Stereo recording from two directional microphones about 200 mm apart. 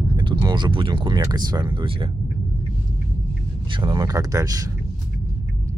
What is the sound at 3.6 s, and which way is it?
Speech, 25° right (ahead or behind).